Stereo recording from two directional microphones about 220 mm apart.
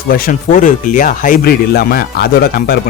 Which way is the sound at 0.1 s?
35° left (ahead or behind).